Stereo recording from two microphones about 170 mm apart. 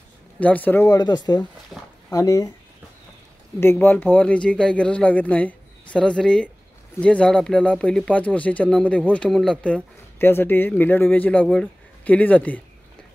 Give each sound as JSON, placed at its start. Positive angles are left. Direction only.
{"t": 0.4, "sound": "speech", "side_deg": 10}
{"t": 1.4, "sound": "speech", "side_deg": 10}
{"t": 3.5, "sound": "speech", "side_deg": 10}